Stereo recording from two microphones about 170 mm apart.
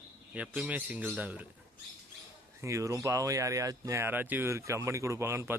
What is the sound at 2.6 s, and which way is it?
Speech, 15° right (ahead or behind).